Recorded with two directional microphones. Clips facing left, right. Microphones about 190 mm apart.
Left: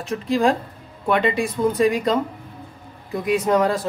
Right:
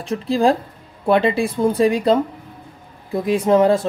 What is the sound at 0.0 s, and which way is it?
Speech, 35° right (ahead or behind).